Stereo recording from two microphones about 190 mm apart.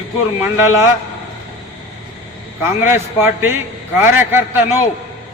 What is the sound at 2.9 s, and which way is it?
A man's voice, 10° right (ahead or behind).